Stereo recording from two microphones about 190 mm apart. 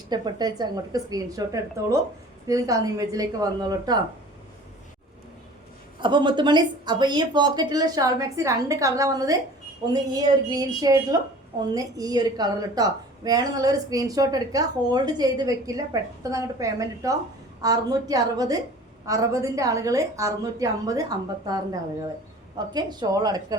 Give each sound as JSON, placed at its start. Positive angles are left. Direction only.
{"t": 0.1, "sound": "a woman's voice", "side_deg": -20}
{"t": 2.5, "sound": "a woman's voice", "side_deg": -20}
{"t": 6.0, "sound": "a woman's voice", "side_deg": -25}